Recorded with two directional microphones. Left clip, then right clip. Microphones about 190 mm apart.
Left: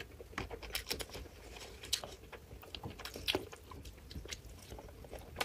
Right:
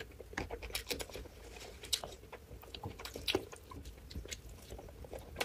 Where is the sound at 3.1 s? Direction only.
5° left (ahead or behind).